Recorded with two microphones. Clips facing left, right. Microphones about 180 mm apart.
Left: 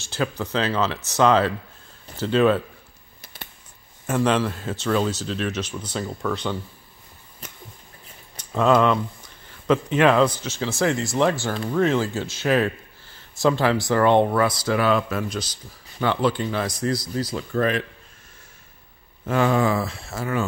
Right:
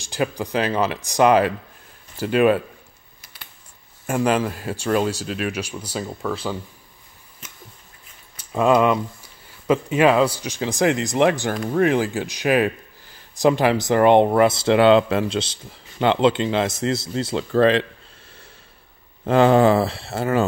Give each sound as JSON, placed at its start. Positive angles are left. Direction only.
{"t": 0.0, "sound": "speech", "side_deg": -15}
{"t": 4.1, "sound": "speech", "side_deg": -10}
{"t": 7.4, "sound": "a sound", "side_deg": 35}
{"t": 8.5, "sound": "speech", "side_deg": -10}
{"t": 17.6, "sound": "speech", "side_deg": -90}
{"t": 19.2, "sound": "speech", "side_deg": -30}